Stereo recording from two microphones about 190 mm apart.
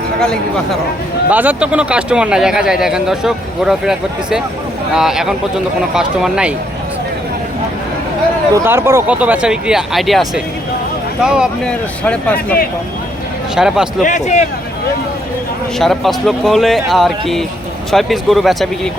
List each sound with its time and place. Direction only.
1.3 s speech: 10° right (ahead or behind)
8.5 s speech: 15° right (ahead or behind); by 12.5 s 5° left (ahead or behind)
13.6 s speech: 5° right (ahead or behind)
14.0 s speech: 40° left (ahead or behind)
15.8 s speech: centre (ahead or behind)